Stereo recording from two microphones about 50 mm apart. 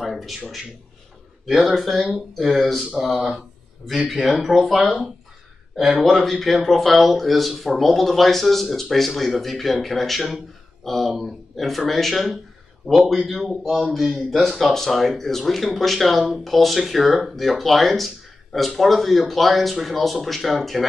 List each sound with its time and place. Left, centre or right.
0.0 s speech: centre
1.7 s speech: centre
5.9 s speech: centre